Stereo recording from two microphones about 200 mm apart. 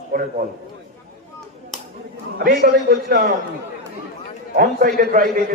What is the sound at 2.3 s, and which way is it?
Speech, 50° right (ahead or behind).